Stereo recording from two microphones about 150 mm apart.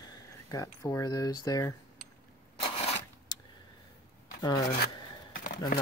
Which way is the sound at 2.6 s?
40° left (ahead or behind).